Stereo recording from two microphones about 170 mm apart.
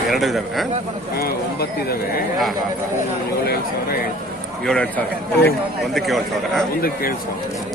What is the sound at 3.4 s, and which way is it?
Speech, 65° left (ahead or behind).